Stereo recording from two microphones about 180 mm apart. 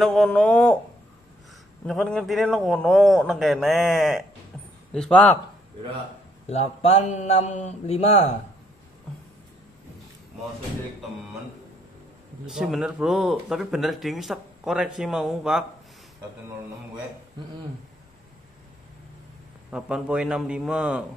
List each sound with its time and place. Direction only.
0.0 s speech: centre (ahead or behind)
1.9 s speech: centre (ahead or behind)
6.4 s speech: 35° left (ahead or behind)
12.4 s speech: centre (ahead or behind)
19.7 s speech: 5° right (ahead or behind)